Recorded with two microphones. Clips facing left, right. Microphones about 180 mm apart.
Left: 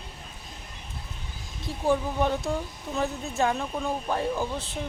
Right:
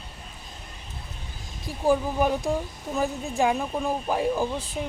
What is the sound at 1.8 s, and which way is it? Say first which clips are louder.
Speech: right 2 dB; 5° right (ahead or behind).